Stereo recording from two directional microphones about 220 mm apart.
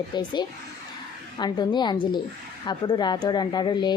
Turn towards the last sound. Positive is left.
turn(degrees=20)  # may be behind; listen again after turning